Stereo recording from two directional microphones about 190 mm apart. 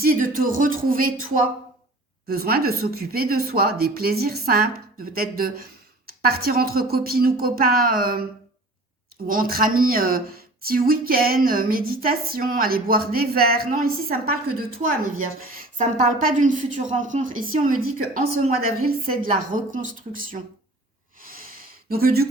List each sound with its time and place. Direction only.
0.0 s a woman's voice: 50° right (ahead or behind)
2.2 s a woman's voice: 55° right (ahead or behind)
15.8 s a woman's voice: 45° right (ahead or behind)
21.8 s a woman's voice: 50° right (ahead or behind)